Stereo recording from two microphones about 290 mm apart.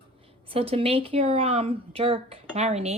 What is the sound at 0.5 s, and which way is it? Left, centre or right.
Speech, centre.